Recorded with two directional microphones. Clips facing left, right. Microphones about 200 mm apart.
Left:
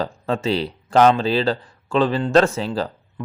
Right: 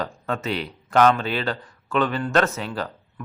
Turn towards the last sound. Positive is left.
turn(degrees=30)  # may be behind; listen again after turning